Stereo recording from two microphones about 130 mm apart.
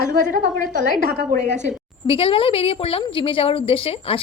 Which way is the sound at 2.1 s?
45° left (ahead or behind).